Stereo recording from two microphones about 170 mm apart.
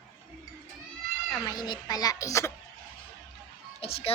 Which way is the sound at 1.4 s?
20° left (ahead or behind).